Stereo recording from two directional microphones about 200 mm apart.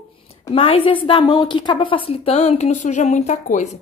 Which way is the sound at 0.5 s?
25° left (ahead or behind).